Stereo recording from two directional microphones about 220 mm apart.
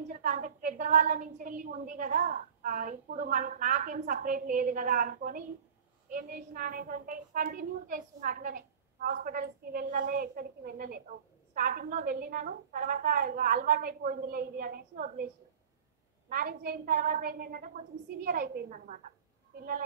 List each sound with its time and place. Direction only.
0.2 s a woman's voice: 35° right (ahead or behind)
16.3 s a woman's voice: 40° right (ahead or behind)